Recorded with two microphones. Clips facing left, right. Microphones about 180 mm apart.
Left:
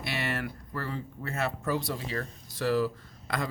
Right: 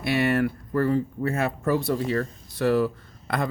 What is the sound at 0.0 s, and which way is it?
Speech, 55° right (ahead or behind).